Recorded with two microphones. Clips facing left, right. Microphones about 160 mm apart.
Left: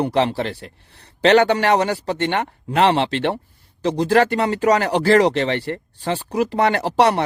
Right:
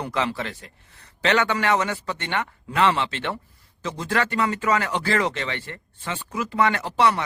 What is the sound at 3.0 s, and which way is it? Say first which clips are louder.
Speech: left 7 dB; 75° left (ahead or behind).